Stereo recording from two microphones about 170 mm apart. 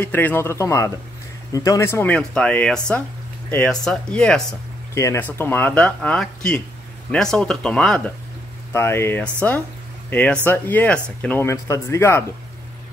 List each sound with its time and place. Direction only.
0.0 s speech: 10° left (ahead or behind)
4.9 s speech: 15° left (ahead or behind)